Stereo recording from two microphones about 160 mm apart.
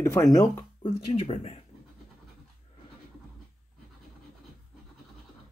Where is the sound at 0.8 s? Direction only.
45° left (ahead or behind).